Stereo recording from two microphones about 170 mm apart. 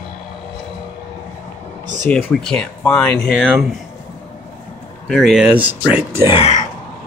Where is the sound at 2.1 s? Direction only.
10° left (ahead or behind).